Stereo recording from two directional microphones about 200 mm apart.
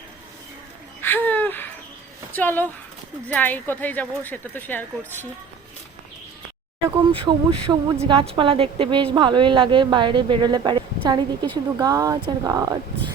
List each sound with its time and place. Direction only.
1.0 s a sound: 10° left (ahead or behind)
2.3 s a woman's voice: 10° left (ahead or behind)
6.8 s a woman's voice: 25° right (ahead or behind)